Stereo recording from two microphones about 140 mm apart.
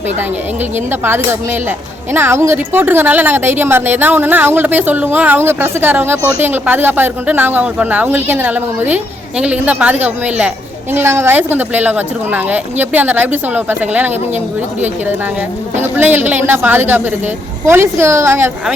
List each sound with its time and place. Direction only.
0.9 s a woman's voice: 15° right (ahead or behind)
15.8 s a woman's voice: 15° right (ahead or behind)